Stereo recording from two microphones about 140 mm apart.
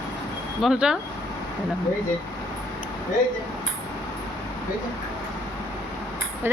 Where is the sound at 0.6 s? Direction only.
5° right (ahead or behind).